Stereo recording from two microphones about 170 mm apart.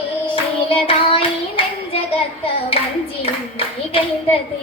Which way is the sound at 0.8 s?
30° left (ahead or behind).